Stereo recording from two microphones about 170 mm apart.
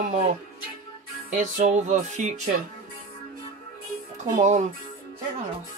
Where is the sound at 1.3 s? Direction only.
45° right (ahead or behind).